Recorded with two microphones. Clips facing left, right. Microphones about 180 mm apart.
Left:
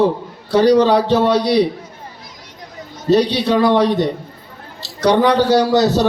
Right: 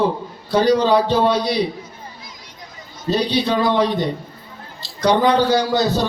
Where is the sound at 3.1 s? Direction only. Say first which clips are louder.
Left 5 dB; 75° left (ahead or behind).